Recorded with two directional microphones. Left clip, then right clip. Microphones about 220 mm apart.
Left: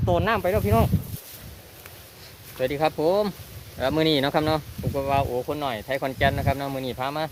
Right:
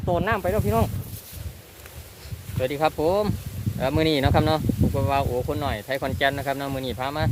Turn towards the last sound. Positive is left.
turn(degrees=0)  # may be behind; listen again after turning